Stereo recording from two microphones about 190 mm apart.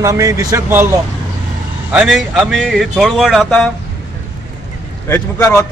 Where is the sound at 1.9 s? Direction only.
Centre (ahead or behind).